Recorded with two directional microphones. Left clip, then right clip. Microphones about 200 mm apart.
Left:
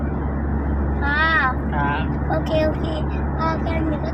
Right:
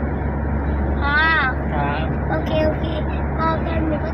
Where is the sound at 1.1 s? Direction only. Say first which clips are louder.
Right 1 dB; 15° left (ahead or behind).